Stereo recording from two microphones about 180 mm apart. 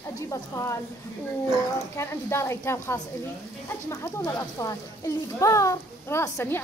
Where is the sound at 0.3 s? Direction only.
15° left (ahead or behind).